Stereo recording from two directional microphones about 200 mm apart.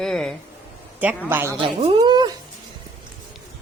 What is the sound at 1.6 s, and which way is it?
Speech, 30° right (ahead or behind).